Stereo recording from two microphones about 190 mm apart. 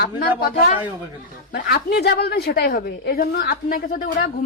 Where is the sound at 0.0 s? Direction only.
55° left (ahead or behind).